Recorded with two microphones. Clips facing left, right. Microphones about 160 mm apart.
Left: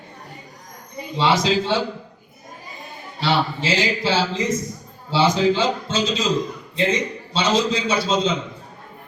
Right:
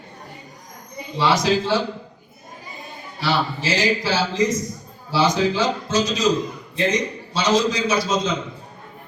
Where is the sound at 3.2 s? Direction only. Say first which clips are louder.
Left 1 dB; 25° left (ahead or behind).